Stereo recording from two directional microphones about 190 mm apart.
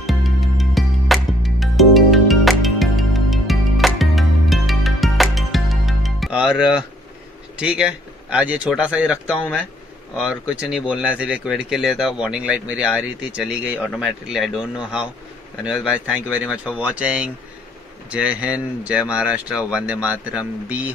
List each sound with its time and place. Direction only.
0.0 s music: centre (ahead or behind)
7.5 s speech: 5° right (ahead or behind)